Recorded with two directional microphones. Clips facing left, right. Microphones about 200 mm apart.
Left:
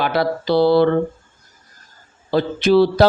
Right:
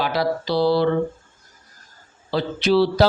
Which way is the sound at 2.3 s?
50° left (ahead or behind).